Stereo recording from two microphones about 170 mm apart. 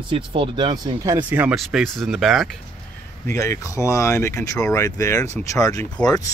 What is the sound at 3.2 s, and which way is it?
Speech, 15° left (ahead or behind).